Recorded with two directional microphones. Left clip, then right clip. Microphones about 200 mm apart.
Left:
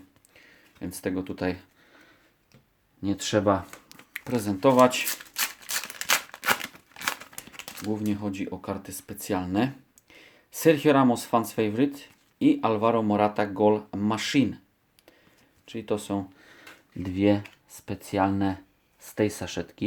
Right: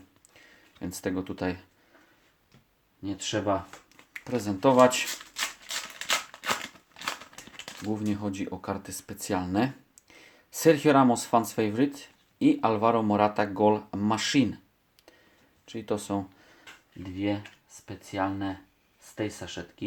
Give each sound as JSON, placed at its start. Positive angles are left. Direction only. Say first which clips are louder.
{"t": 0.3, "sound": "speech", "louder": "left 1 dB", "side_deg": 0}
{"t": 3.0, "sound": "speech", "louder": "left 6 dB", "side_deg": 50}
{"t": 4.1, "sound": "speech", "louder": "left 2 dB", "side_deg": 25}
{"t": 5.3, "sound": "scissors", "louder": "left 2 dB", "side_deg": 15}
{"t": 7.9, "sound": "speech", "louder": "left 2 dB", "side_deg": 5}
{"t": 15.6, "sound": "speech", "louder": "left 2 dB", "side_deg": 5}
{"t": 17.0, "sound": "speech", "louder": "left 7 dB", "side_deg": 50}